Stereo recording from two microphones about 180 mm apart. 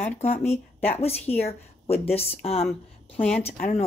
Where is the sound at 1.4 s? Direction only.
35° left (ahead or behind).